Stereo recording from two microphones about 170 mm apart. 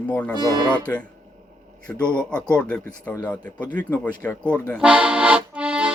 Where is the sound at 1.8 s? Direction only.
5° left (ahead or behind).